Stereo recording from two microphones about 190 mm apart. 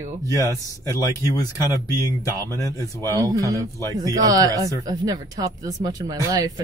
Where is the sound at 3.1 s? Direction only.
20° right (ahead or behind).